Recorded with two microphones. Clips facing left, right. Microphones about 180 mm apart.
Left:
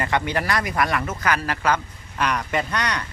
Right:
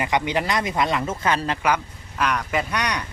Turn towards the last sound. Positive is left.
turn(degrees=-15)  # may be behind; listen again after turning